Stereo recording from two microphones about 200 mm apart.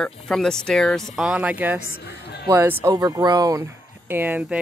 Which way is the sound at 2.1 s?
55° left (ahead or behind).